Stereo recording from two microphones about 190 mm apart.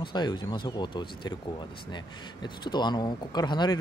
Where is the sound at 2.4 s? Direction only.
25° left (ahead or behind).